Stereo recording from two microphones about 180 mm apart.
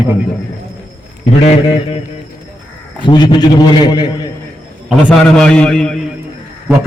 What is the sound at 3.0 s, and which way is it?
A man's voice, 25° left (ahead or behind).